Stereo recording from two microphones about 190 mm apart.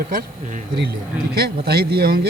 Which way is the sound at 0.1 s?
45° right (ahead or behind).